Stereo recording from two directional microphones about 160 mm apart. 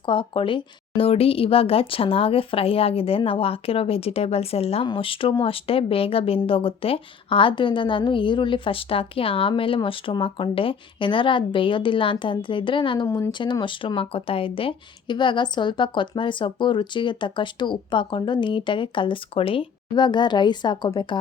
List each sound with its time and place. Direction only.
0.0 s a woman's voice: 30° left (ahead or behind)